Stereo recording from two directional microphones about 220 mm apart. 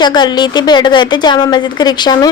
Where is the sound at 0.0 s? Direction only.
20° left (ahead or behind).